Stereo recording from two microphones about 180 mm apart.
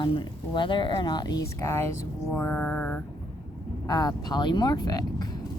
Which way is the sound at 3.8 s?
20° left (ahead or behind).